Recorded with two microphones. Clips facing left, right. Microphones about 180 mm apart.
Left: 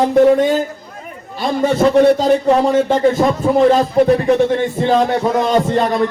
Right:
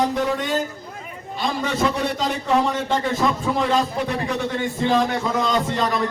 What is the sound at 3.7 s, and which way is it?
Speech, 50° left (ahead or behind).